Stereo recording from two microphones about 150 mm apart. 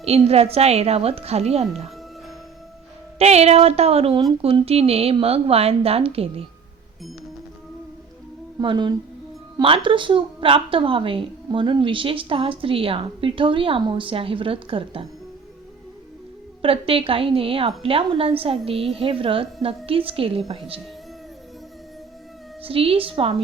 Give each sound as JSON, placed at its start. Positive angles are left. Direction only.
{"t": 0.0, "sound": "a woman's voice", "side_deg": -45}
{"t": 3.2, "sound": "a woman's voice", "side_deg": -45}
{"t": 8.5, "sound": "a woman's voice", "side_deg": -30}
{"t": 16.6, "sound": "a woman's voice", "side_deg": -40}
{"t": 22.6, "sound": "a woman's voice", "side_deg": -40}